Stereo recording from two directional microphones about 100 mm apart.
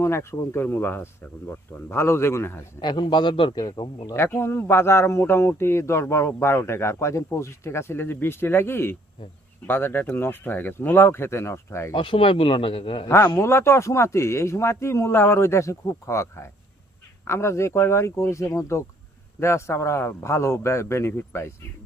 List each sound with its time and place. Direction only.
0.0 s speech: 25° left (ahead or behind)
2.8 s a man's voice: 50° left (ahead or behind)
4.1 s speech: 25° left (ahead or behind)
11.9 s a man's voice: 60° left (ahead or behind)
13.1 s speech: 25° left (ahead or behind)